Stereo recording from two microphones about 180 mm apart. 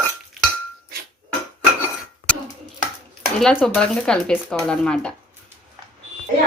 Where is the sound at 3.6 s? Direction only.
5° left (ahead or behind).